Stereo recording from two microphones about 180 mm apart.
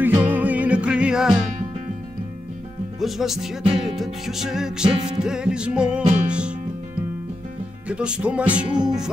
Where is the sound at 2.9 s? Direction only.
Centre (ahead or behind).